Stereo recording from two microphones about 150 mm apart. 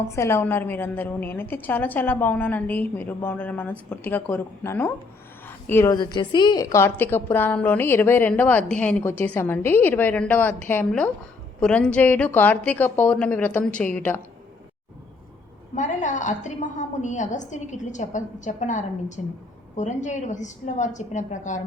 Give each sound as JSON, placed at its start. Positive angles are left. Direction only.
{"t": 0.2, "sound": "a woman's voice", "side_deg": 15}
{"t": 15.7, "sound": "a woman's voice", "side_deg": 55}